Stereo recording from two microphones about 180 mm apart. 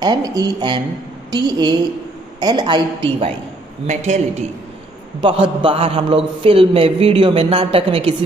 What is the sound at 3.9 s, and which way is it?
Speech, 40° right (ahead or behind).